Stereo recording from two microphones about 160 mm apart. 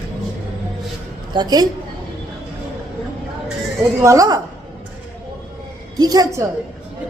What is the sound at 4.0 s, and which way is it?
Speech, 20° right (ahead or behind).